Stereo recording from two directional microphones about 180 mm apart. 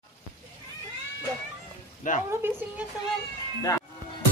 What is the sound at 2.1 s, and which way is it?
Speech, 45° left (ahead or behind).